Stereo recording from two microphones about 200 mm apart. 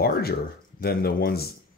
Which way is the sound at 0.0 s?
50° left (ahead or behind).